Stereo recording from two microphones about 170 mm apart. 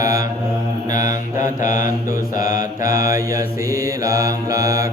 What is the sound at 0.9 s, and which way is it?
Mantra, 50° left (ahead or behind).